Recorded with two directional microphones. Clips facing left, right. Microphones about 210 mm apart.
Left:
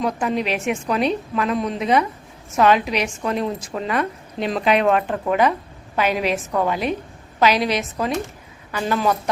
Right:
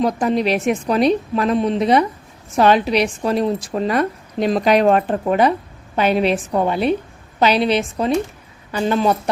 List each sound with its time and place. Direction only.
0.0 s a woman's voice: 35° right (ahead or behind)